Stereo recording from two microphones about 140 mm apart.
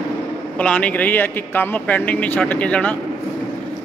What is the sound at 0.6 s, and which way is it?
Speech, 10° left (ahead or behind).